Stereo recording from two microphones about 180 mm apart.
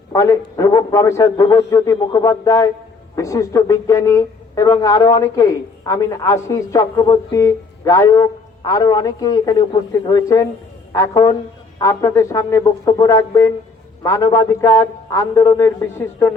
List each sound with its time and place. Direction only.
0.1 s a man's voice: 20° left (ahead or behind)